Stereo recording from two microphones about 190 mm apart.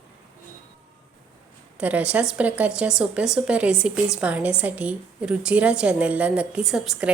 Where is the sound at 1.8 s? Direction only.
5° right (ahead or behind).